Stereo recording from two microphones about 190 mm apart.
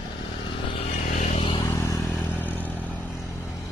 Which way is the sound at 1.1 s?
40° left (ahead or behind).